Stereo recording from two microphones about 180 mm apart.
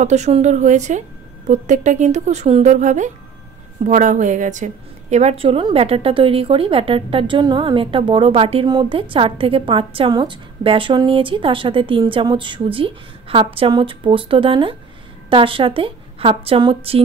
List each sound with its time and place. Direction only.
0.0 s a woman's voice: 40° right (ahead or behind)